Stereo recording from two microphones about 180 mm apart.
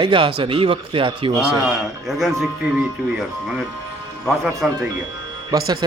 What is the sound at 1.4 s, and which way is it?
A man's voice, 5° right (ahead or behind).